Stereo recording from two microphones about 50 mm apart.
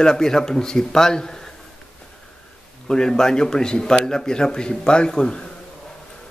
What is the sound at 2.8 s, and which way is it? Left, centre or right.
A man's voice, centre.